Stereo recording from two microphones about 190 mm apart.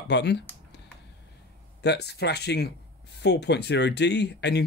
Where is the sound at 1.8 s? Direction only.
60° left (ahead or behind).